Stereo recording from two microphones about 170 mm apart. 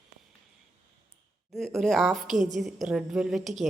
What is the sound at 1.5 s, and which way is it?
A woman's voice, centre (ahead or behind).